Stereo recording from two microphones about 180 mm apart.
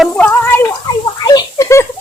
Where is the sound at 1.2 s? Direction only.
20° left (ahead or behind).